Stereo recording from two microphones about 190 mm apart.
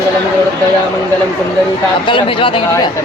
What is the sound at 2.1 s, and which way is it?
Speech, 25° left (ahead or behind).